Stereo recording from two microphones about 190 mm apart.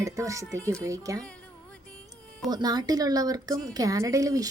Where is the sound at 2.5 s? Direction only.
20° right (ahead or behind).